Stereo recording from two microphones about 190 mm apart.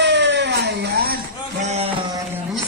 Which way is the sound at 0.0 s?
65° right (ahead or behind).